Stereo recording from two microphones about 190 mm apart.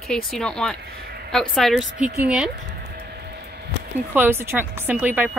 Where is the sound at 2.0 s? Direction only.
40° right (ahead or behind).